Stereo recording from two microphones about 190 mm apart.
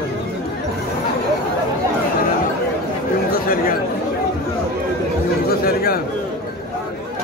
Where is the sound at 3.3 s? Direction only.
50° left (ahead or behind).